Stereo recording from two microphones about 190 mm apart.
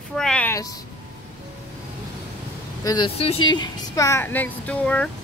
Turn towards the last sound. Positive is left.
turn(degrees=5)  # may be behind; listen again after turning